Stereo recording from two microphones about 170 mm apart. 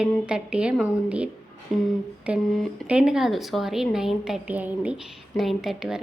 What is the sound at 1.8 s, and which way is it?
A woman's voice, centre (ahead or behind).